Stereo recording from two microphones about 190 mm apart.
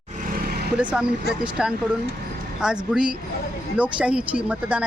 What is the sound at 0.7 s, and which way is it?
Vehicle, 5° right (ahead or behind).